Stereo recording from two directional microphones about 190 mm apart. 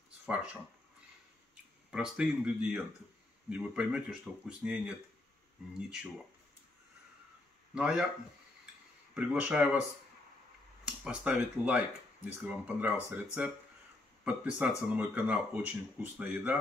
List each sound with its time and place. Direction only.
1.9 s speech: 5° right (ahead or behind)
7.7 s speech: 5° right (ahead or behind)
9.1 s speech: 5° right (ahead or behind)
11.1 s speech: 5° right (ahead or behind)